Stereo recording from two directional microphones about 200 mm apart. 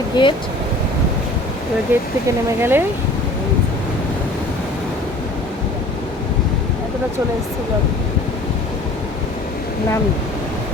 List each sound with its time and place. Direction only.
0.1 s speech: 20° left (ahead or behind)
1.9 s speech: 10° right (ahead or behind)